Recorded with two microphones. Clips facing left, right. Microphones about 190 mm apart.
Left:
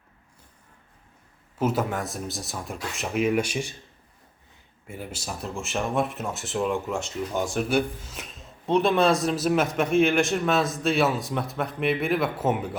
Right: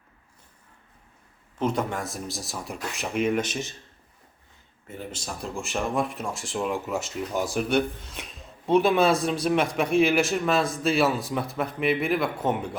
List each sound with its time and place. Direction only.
1.5 s speech: 5° left (ahead or behind)
4.9 s speech: 10° left (ahead or behind)